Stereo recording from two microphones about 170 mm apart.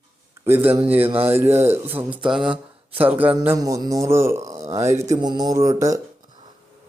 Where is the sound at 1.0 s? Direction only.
35° right (ahead or behind).